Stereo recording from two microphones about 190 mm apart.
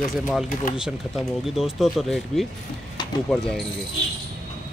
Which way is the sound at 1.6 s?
Centre (ahead or behind).